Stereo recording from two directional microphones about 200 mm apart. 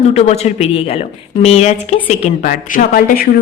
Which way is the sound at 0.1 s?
35° left (ahead or behind).